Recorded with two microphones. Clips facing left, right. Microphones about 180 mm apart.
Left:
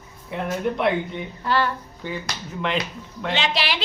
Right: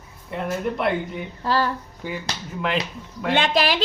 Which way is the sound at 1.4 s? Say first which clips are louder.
Even; 35° right (ahead or behind).